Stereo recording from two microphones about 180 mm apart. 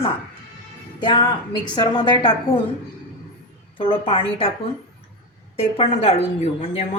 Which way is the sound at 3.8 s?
30° left (ahead or behind).